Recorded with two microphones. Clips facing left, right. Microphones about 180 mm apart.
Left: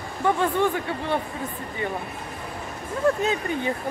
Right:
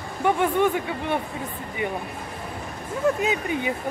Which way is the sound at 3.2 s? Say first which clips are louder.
Even; 15° right (ahead or behind).